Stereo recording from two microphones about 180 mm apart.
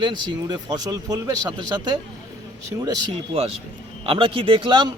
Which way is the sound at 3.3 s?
35° right (ahead or behind).